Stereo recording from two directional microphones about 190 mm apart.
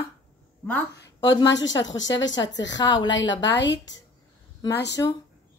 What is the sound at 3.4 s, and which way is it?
Speech, 65° left (ahead or behind).